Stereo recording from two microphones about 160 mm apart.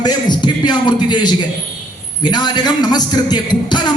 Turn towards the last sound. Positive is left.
turn(degrees=30)  # may be behind; listen again after turning